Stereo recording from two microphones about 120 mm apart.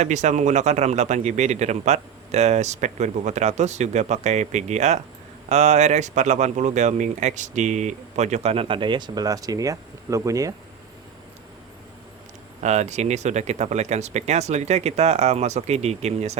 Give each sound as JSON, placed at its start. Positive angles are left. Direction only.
{"t": 0.0, "sound": "speech", "side_deg": -80}
{"t": 12.6, "sound": "speech", "side_deg": -75}